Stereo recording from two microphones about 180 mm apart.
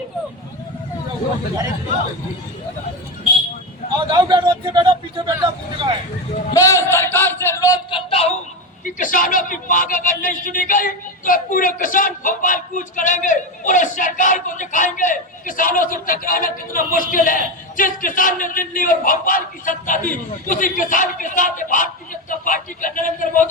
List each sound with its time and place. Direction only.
3.9 s a man's voice: 25° right (ahead or behind)
6.5 s a sound: 15° left (ahead or behind); by 8.3 s 30° left (ahead or behind)
8.8 s a man's voice: 50° left (ahead or behind)